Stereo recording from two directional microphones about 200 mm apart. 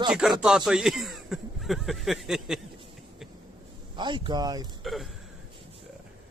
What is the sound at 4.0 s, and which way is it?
Speech, 25° right (ahead or behind).